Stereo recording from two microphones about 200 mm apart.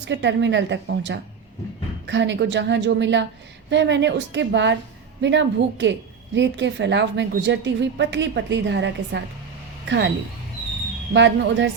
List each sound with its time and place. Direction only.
0.0 s a woman's voice: 60° right (ahead or behind)
11.1 s a woman's voice: 60° right (ahead or behind)